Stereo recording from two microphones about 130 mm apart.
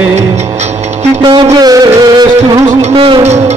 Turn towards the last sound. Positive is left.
turn(degrees=-50)  # may be behind; listen again after turning